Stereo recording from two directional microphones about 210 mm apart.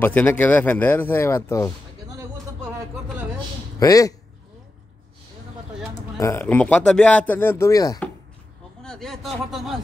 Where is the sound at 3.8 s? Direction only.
15° left (ahead or behind).